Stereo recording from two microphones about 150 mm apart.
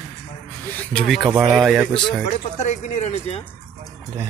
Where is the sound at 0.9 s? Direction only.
5° left (ahead or behind).